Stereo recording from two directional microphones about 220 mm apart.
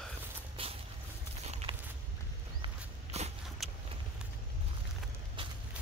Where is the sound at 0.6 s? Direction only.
25° right (ahead or behind).